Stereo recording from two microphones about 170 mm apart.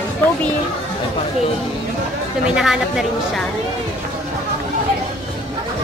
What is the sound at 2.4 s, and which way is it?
A woman's voice, 5° right (ahead or behind).